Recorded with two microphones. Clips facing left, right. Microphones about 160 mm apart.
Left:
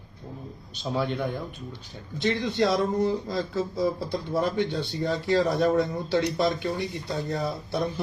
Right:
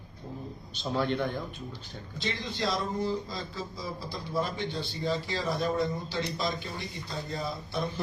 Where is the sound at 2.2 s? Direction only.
60° left (ahead or behind).